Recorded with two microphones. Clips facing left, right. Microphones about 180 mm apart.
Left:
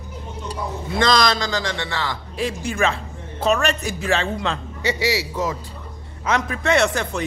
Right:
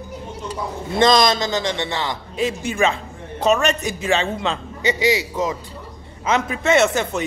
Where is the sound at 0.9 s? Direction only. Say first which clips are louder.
Right 3 dB; 20° right (ahead or behind).